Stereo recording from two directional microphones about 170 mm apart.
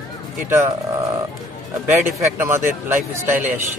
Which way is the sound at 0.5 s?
15° right (ahead or behind).